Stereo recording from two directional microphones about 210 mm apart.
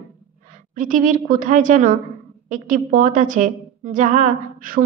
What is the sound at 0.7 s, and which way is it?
A woman's voice, 40° right (ahead or behind).